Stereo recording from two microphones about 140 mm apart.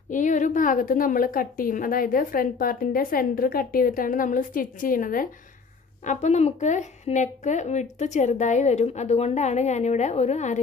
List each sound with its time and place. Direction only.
0.1 s a woman's voice: 65° left (ahead or behind)
6.0 s speech: 55° left (ahead or behind)